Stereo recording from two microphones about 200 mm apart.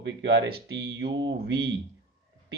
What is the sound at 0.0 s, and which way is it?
Speech, 60° right (ahead or behind).